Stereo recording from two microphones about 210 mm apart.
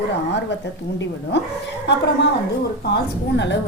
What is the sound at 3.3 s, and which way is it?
Speech, 55° left (ahead or behind).